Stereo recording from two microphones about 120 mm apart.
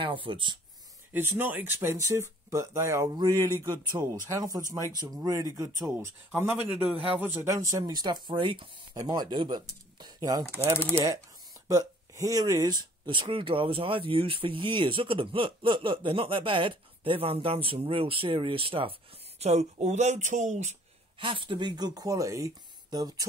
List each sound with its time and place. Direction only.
0.0 s speech: 45° right (ahead or behind)
1.1 s speech: 20° right (ahead or behind); by 18.9 s 50° right (ahead or behind)
19.4 s speech: 65° right (ahead or behind); by 20.7 s 80° right
21.2 s speech: 45° right (ahead or behind)